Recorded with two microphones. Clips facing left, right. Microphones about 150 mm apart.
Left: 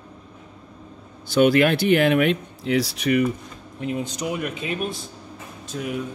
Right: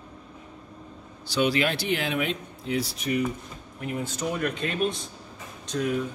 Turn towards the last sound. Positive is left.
turn(degrees=5)  # may be behind; listen again after turning